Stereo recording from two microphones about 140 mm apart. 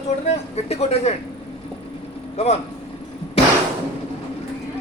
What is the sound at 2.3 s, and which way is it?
Speech, 50° left (ahead or behind).